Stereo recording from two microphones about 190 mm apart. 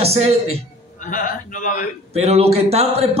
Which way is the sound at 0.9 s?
45° left (ahead or behind).